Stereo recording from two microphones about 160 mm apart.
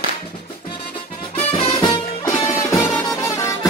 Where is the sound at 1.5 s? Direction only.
30° left (ahead or behind).